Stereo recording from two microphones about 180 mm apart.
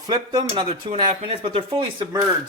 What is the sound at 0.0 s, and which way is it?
Speech, 25° right (ahead or behind).